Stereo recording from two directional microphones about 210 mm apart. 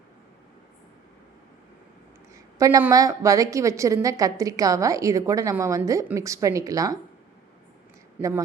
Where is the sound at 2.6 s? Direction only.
15° right (ahead or behind).